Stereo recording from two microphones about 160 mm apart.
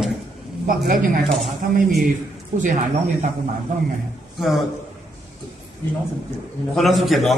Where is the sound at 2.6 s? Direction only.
50° right (ahead or behind).